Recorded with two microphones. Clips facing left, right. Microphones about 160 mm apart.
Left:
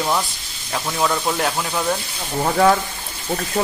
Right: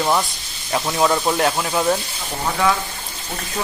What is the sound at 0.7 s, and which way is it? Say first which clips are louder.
Speech: right 3 dB; 10° right (ahead or behind).